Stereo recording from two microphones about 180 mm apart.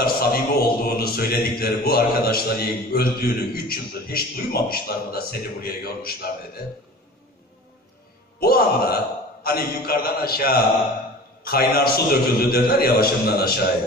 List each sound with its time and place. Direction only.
0.0 s speech: 60° left (ahead or behind)
8.4 s speech: 55° left (ahead or behind)